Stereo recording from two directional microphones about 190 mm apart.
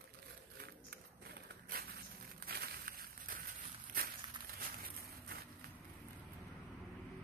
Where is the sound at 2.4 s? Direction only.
55° right (ahead or behind).